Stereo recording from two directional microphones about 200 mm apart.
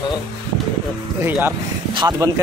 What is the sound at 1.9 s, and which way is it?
Speech, 15° right (ahead or behind).